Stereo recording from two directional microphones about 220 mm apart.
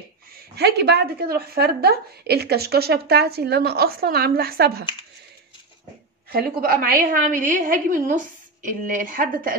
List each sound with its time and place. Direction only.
0.6 s a woman's voice: 50° right (ahead or behind)
6.3 s a woman's voice: 40° right (ahead or behind)